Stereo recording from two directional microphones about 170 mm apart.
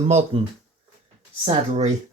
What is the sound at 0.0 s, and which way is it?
Speech, 40° right (ahead or behind).